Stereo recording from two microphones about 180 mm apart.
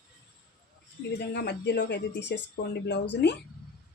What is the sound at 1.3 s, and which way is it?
Speech, 70° left (ahead or behind).